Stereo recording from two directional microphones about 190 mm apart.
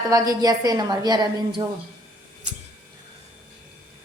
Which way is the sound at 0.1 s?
20° right (ahead or behind).